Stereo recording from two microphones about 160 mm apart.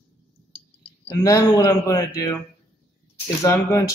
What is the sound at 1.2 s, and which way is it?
Speech, 20° left (ahead or behind).